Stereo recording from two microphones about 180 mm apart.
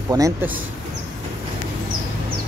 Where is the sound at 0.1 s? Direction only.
15° right (ahead or behind).